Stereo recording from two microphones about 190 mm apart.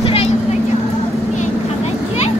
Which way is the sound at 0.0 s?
30° left (ahead or behind).